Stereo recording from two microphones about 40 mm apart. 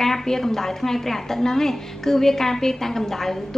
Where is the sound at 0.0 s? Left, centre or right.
Centre.